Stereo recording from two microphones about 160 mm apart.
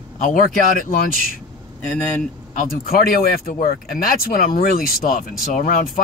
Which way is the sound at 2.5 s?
65° left (ahead or behind).